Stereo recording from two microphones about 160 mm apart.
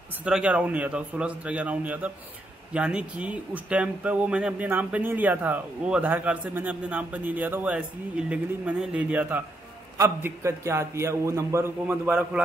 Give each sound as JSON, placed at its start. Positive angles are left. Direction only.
{"t": 0.2, "sound": "speech", "side_deg": -5}